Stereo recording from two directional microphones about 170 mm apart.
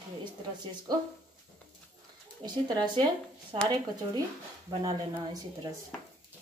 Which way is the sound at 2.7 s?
25° right (ahead or behind).